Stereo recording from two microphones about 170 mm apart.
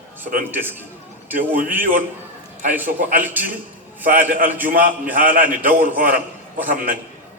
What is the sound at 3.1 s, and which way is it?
Speech, 10° right (ahead or behind).